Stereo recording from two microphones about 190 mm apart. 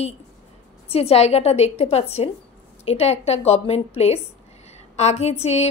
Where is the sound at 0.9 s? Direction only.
30° left (ahead or behind).